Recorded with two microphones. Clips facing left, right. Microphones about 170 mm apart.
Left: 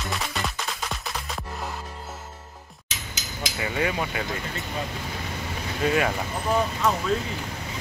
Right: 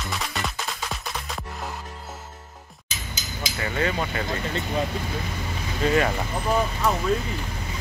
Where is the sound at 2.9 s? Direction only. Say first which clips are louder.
Right 1 dB; 90° left.